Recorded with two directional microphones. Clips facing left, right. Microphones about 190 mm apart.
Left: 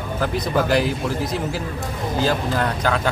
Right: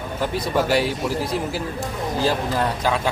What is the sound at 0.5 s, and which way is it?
Speech, 5° right (ahead or behind).